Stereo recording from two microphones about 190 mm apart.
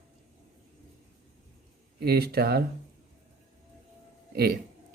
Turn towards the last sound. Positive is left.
turn(degrees=-55)  # may be behind; listen again after turning